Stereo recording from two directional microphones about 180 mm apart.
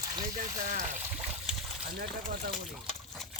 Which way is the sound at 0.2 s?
45° right (ahead or behind).